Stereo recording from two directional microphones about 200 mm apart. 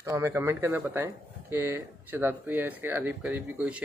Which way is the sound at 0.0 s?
15° right (ahead or behind).